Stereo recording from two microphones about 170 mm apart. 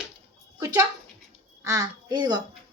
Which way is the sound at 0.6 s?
15° right (ahead or behind).